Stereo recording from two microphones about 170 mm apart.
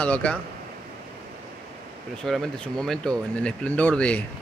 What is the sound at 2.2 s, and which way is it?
Speech, centre (ahead or behind).